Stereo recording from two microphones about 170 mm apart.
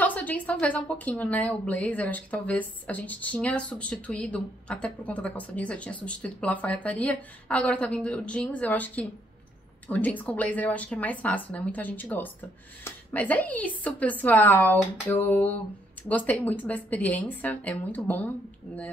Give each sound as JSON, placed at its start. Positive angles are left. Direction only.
{"t": 0.0, "sound": "a woman's voice", "side_deg": 10}